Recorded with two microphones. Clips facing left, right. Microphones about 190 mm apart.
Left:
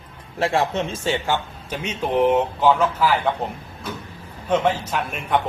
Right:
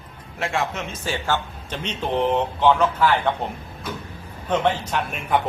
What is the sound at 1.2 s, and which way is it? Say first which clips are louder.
Speech: left 1 dB; 10° left (ahead or behind).